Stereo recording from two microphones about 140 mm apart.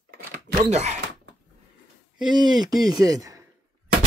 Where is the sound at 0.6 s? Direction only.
55° right (ahead or behind).